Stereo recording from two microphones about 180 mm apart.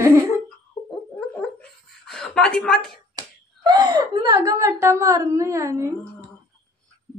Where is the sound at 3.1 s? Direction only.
25° right (ahead or behind).